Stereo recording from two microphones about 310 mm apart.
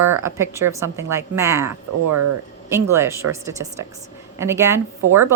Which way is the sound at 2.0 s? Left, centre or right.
Right.